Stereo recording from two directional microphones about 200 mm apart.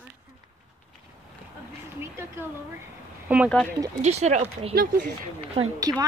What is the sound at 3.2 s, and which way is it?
Speech, 5° right (ahead or behind).